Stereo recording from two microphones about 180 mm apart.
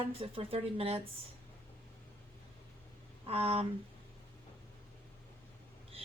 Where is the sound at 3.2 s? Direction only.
35° right (ahead or behind).